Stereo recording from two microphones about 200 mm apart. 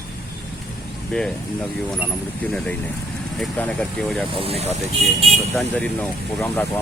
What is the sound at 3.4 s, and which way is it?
Speech, 5° left (ahead or behind).